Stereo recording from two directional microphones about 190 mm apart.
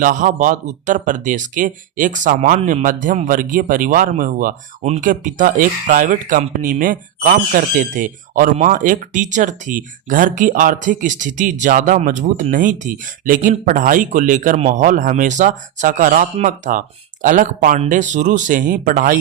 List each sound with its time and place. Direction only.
0.0 s speech: 45° right (ahead or behind)